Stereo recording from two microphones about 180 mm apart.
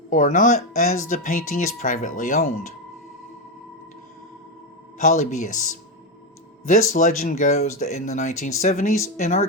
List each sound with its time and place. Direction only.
0.1 s speech: 45° left (ahead or behind)
4.9 s speech: 40° left (ahead or behind)
6.7 s speech: 45° left (ahead or behind)